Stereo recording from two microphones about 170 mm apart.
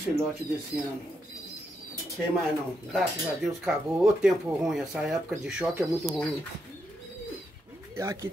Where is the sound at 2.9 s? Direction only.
Centre (ahead or behind).